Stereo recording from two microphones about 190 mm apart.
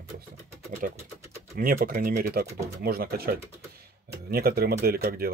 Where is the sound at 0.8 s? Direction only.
50° right (ahead or behind).